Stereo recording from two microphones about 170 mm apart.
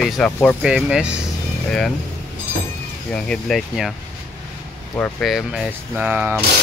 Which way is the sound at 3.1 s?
5° left (ahead or behind).